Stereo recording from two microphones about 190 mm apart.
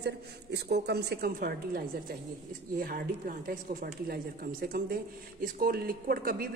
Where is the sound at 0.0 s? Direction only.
60° right (ahead or behind).